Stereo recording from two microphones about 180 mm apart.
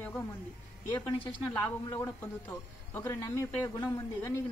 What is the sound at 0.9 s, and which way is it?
A man's voice, 25° left (ahead or behind).